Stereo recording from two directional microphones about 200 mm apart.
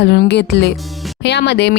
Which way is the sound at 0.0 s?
55° left (ahead or behind).